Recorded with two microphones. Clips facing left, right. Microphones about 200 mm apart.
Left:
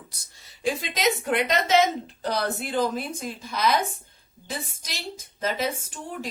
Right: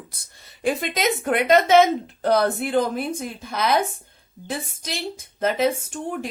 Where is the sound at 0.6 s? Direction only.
55° right (ahead or behind).